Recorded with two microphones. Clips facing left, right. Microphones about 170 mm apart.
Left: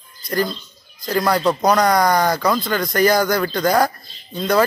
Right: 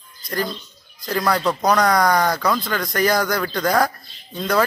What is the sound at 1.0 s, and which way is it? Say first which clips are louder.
Speech: left 3 dB; centre (ahead or behind).